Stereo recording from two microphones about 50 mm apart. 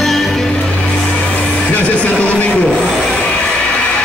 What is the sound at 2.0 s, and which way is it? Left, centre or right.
Speech, left.